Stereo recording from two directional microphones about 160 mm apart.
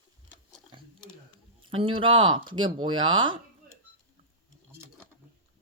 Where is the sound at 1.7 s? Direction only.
35° right (ahead or behind).